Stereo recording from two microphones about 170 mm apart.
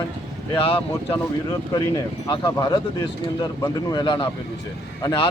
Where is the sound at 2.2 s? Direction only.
25° left (ahead or behind).